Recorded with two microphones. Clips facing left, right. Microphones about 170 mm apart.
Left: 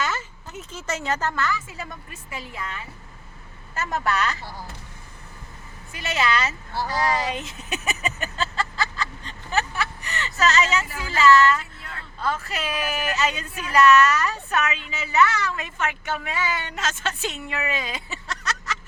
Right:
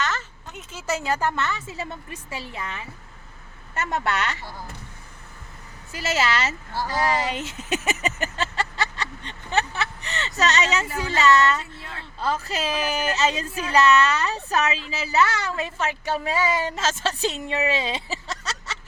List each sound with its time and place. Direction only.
0.0 s a sound: 10° left (ahead or behind)
0.7 s speech: 5° right (ahead or behind); by 4.4 s 25° right (ahead or behind)
5.9 s speech: 30° right (ahead or behind)
9.5 s speech: 30° right (ahead or behind)